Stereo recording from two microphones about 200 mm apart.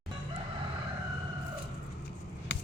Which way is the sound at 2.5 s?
60° left (ahead or behind).